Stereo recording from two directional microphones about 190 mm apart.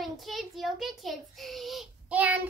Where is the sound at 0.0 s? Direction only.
Centre (ahead or behind).